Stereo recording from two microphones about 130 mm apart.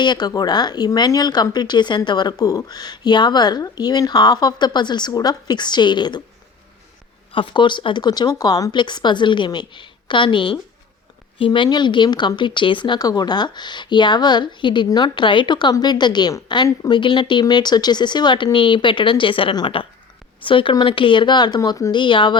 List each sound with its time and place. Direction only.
0.0 s speech: 35° left (ahead or behind)
7.3 s speech: 40° left (ahead or behind)
17.0 s speech: 40° left (ahead or behind)